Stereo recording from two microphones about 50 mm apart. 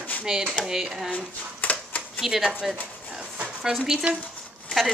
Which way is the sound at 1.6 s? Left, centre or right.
Left.